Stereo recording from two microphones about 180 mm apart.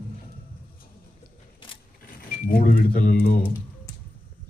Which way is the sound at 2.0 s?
55° left (ahead or behind).